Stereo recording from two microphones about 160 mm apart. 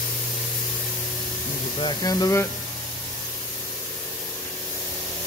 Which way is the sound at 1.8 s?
25° left (ahead or behind).